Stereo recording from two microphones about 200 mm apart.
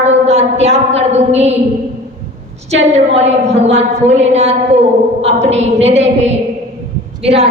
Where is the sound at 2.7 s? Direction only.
35° right (ahead or behind).